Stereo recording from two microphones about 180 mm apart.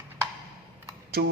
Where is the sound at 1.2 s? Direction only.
60° right (ahead or behind).